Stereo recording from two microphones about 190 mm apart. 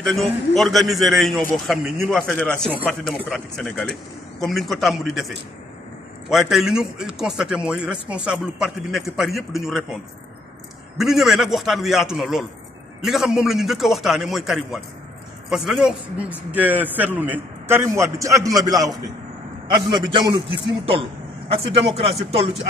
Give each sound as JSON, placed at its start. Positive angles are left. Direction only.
{"t": 0.0, "sound": "a man's voice", "side_deg": 0}
{"t": 6.2, "sound": "a man's voice", "side_deg": 0}
{"t": 11.0, "sound": "a man's voice", "side_deg": 0}